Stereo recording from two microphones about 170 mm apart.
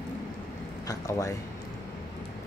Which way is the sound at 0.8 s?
20° left (ahead or behind).